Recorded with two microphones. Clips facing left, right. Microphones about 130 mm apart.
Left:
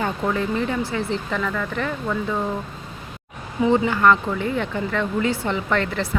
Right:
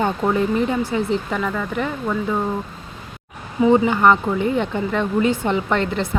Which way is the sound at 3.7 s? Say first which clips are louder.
Right 3 dB; 20° right (ahead or behind).